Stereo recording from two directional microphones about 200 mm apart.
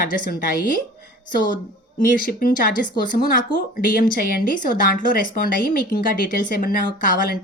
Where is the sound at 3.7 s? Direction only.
45° left (ahead or behind).